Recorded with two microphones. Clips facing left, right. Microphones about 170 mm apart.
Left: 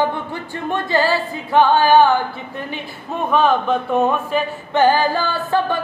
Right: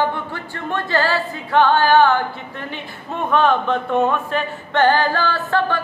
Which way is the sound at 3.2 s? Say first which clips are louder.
Left 1 dB; 10° left (ahead or behind).